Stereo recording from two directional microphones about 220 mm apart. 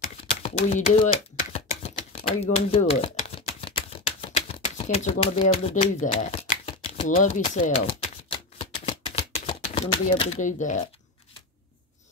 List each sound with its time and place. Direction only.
0.0 s a sound: 30° left (ahead or behind)
5.2 s speech: 30° left (ahead or behind)
7.4 s shuffling cards: 30° left (ahead or behind)